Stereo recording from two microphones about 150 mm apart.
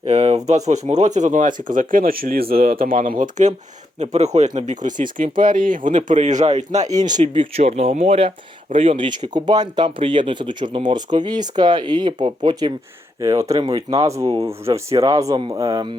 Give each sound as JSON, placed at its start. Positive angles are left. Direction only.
{"t": 0.0, "sound": "a sound", "side_deg": -45}
{"t": 0.7, "sound": "speech", "side_deg": -50}
{"t": 4.0, "sound": "speech", "side_deg": -50}